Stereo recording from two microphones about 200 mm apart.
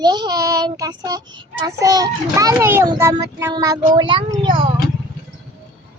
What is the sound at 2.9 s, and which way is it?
A child's voice, 15° right (ahead or behind).